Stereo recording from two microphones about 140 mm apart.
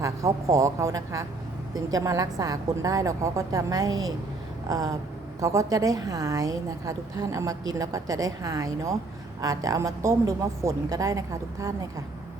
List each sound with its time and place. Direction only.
0.0 s a woman's voice: 25° right (ahead or behind)